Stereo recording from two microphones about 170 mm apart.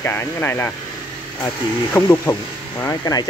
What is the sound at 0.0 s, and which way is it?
Speech, 15° left (ahead or behind).